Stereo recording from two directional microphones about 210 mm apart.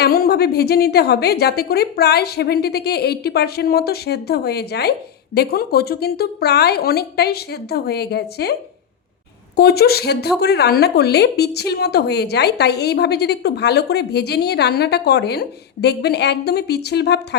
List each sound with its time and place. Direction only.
0.0 s a woman's voice: 50° left (ahead or behind)
9.6 s a woman's voice: 50° left (ahead or behind)